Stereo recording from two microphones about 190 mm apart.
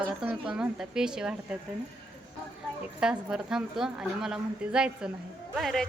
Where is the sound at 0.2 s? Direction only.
5° right (ahead or behind).